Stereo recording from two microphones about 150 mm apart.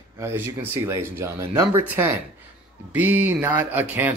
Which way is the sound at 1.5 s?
35° right (ahead or behind).